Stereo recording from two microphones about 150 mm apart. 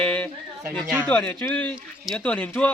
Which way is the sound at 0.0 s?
5° left (ahead or behind).